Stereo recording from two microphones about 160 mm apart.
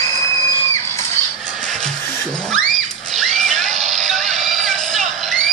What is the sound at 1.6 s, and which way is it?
Music, 5° left (ahead or behind).